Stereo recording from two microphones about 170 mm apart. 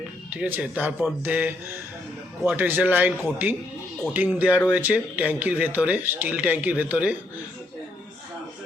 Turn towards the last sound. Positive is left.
turn(degrees=-10)  # may be behind; listen again after turning